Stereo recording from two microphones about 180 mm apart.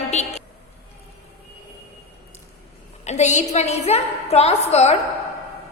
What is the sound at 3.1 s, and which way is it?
A woman's voice, 40° left (ahead or behind).